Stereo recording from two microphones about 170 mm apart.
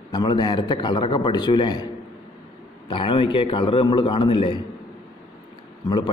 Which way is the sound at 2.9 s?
30° left (ahead or behind).